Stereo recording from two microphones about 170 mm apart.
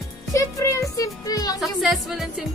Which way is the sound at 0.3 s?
20° left (ahead or behind).